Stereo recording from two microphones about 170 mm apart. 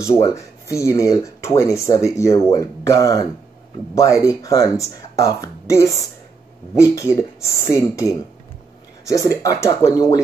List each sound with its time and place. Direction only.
0.0 s speech: 15° left (ahead or behind)